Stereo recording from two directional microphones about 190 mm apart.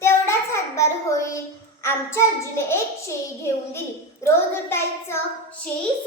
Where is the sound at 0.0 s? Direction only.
15° left (ahead or behind).